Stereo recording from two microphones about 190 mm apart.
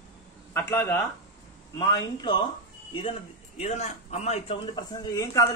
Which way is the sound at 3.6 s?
35° left (ahead or behind).